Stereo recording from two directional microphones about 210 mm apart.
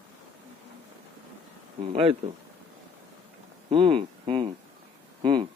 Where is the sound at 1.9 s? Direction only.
25° right (ahead or behind).